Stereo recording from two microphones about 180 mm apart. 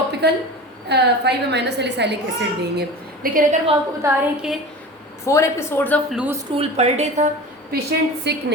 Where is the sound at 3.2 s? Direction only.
50° right (ahead or behind).